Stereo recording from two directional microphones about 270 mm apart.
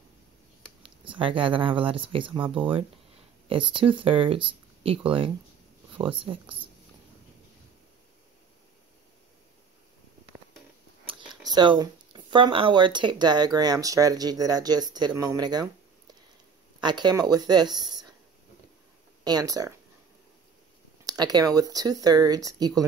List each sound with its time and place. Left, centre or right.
0.8 s speech: centre
6.4 s speech: centre
11.1 s speech: centre
16.8 s speech: centre
17.7 s a sound: centre
19.2 s speech: centre
21.0 s speech: centre